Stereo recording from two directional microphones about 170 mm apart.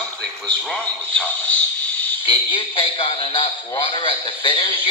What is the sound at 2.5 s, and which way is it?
A man's voice, 35° left (ahead or behind).